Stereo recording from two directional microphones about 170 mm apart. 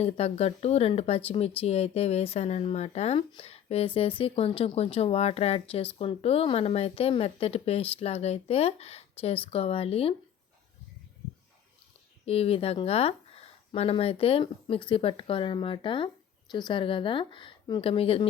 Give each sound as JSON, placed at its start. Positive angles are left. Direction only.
{"t": 0.0, "sound": "speech", "side_deg": 40}
{"t": 12.2, "sound": "speech", "side_deg": 35}